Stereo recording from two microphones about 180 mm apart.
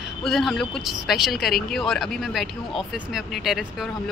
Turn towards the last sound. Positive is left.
turn(degrees=0)  # may be behind; listen again after turning